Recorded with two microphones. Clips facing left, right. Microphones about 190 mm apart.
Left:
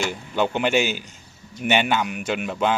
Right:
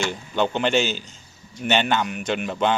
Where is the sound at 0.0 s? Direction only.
10° left (ahead or behind).